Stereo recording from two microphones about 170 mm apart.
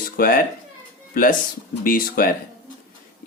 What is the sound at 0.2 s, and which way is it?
Speech, 55° left (ahead or behind).